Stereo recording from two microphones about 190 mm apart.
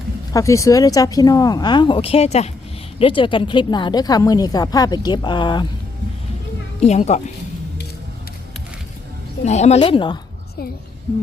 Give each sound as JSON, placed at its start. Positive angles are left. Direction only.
{"t": 0.3, "sound": "speech", "side_deg": 15}
{"t": 6.7, "sound": "speech", "side_deg": 35}
{"t": 9.4, "sound": "speech", "side_deg": 35}
{"t": 9.8, "sound": "speech", "side_deg": 25}